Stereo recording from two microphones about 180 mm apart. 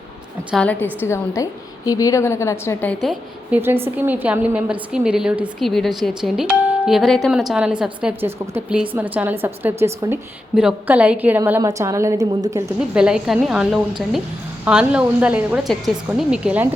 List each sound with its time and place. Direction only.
0.5 s a woman's voice: 5° left (ahead or behind)
3.6 s a woman's voice: 10° right (ahead or behind)
10.5 s a woman's voice: 5° right (ahead or behind)
12.9 s a woman's voice: 5° right (ahead or behind)